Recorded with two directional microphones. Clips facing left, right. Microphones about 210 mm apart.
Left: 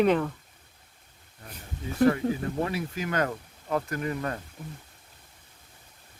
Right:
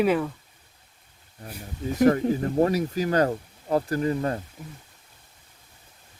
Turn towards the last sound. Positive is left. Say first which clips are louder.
# right 6 dB
turn(degrees=-30)  # may be behind; listen again after turning